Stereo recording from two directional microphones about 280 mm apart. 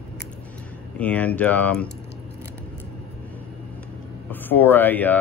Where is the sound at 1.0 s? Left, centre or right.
Centre.